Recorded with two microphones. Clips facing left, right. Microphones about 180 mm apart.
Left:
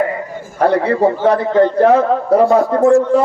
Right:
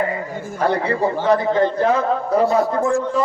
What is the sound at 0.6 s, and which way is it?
A man's voice, 60° left (ahead or behind).